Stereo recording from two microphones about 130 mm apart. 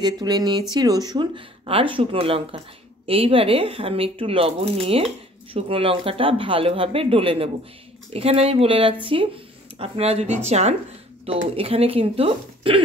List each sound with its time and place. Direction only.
0.0 s speech: 30° right (ahead or behind); by 10.8 s 60° right (ahead or behind)
11.5 s speech: 50° right (ahead or behind)